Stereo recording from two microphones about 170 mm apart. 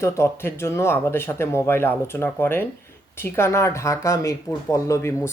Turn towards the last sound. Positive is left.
turn(degrees=15)  # may be behind; listen again after turning